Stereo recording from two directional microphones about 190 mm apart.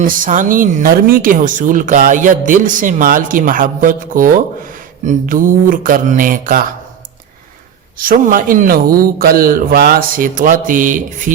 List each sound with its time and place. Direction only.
0.0 s speech: 45° right (ahead or behind)
7.9 s speech: 45° right (ahead or behind)